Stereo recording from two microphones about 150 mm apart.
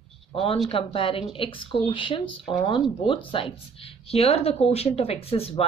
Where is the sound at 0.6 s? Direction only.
35° left (ahead or behind).